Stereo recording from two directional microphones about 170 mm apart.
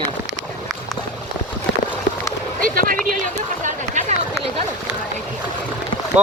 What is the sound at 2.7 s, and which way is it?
Speech, 55° right (ahead or behind).